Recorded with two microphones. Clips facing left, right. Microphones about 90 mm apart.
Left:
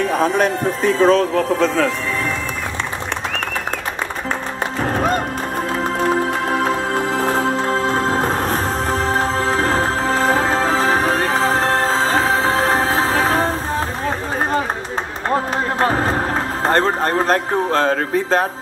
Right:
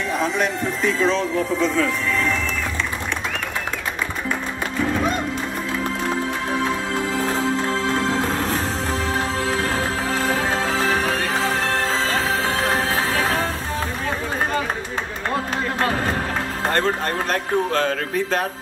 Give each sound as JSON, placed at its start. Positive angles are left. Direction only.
{"t": 0.1, "sound": "speech", "side_deg": 50}
{"t": 4.8, "sound": "music", "side_deg": 45}
{"t": 15.2, "sound": "run", "side_deg": 35}
{"t": 16.6, "sound": "speech", "side_deg": 35}